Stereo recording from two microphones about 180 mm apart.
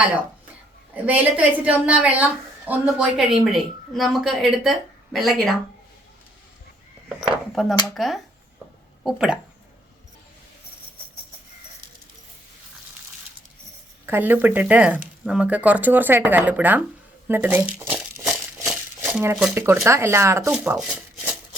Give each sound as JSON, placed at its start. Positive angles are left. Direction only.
{"t": 0.9, "sound": "a woman's voice", "side_deg": -10}
{"t": 7.2, "sound": "a woman's voice", "side_deg": 0}
{"t": 14.1, "sound": "speech", "side_deg": -10}
{"t": 18.7, "sound": "dishes", "side_deg": -5}
{"t": 19.5, "sound": "speech", "side_deg": -15}
{"t": 20.5, "sound": "speech", "side_deg": -5}